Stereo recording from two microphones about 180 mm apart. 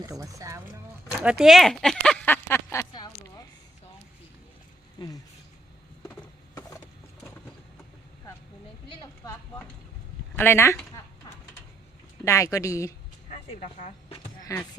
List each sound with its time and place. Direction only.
0.1 s speech: 20° right (ahead or behind)
1.2 s speech: 5° right (ahead or behind); by 3.4 s 20° left (ahead or behind)
4.9 s speech: 20° left (ahead or behind)
6.6 s a sound: 20° left (ahead or behind)
9.2 s clip-clop: 15° left (ahead or behind)
10.3 s speech: 10° left (ahead or behind)
12.2 s speech: 15° left (ahead or behind)
13.3 s a sound: 40° left (ahead or behind)
14.4 s speech: 15° left (ahead or behind)